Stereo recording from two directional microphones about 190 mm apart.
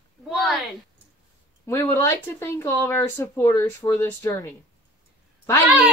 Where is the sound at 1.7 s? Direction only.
10° left (ahead or behind).